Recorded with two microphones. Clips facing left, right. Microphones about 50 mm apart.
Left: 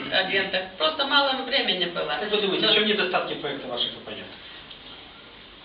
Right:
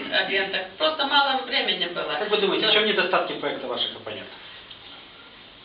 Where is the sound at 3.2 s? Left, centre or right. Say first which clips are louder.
Right 2 dB; right.